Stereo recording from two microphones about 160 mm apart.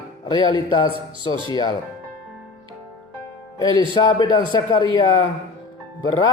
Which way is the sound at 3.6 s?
25° left (ahead or behind).